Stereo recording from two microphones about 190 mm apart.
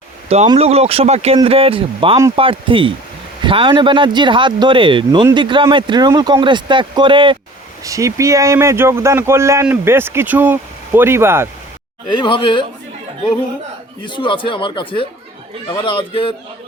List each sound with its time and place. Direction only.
0.4 s speech: 30° right (ahead or behind); by 11.4 s 10° right (ahead or behind)
12.1 s speech: 25° left (ahead or behind)
14.0 s speech: 25° left (ahead or behind)